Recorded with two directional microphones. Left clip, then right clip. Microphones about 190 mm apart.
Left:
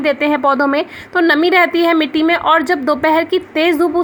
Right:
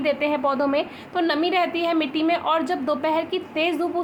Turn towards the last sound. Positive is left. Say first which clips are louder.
# left 9 dB
turn(degrees=35)  # may be behind; listen again after turning